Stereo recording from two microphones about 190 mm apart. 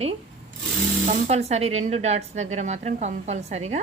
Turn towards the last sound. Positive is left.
turn(degrees=-35)  # may be behind; listen again after turning